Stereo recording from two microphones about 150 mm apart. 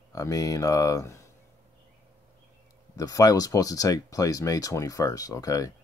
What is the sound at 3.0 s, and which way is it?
Speech, 25° left (ahead or behind).